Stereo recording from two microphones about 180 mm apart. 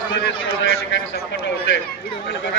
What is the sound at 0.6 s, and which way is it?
Speech, 80° left.